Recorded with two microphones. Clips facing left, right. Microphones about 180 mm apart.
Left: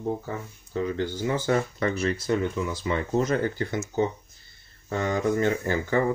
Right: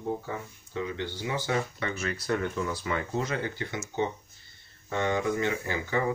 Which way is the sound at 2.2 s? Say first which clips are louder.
Right 1 dB; 20° left (ahead or behind).